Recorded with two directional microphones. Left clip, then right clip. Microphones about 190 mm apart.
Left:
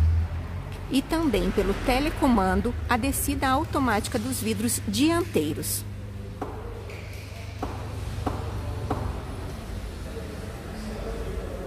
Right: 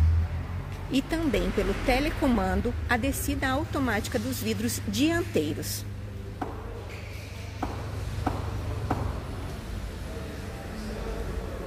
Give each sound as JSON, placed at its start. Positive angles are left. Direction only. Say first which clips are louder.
{"t": 0.9, "sound": "speech", "louder": "left 2 dB", "side_deg": 15}